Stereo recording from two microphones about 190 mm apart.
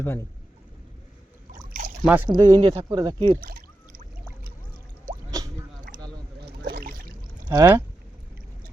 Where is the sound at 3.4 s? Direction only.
45° right (ahead or behind).